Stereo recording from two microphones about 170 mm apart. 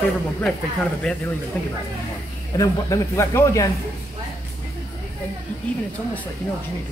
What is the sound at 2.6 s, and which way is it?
Speech, 20° left (ahead or behind).